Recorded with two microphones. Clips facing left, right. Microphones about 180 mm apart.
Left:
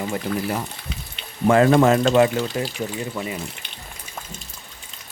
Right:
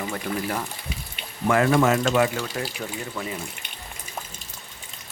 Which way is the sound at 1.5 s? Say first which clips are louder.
Left 4 dB; 30° left (ahead or behind).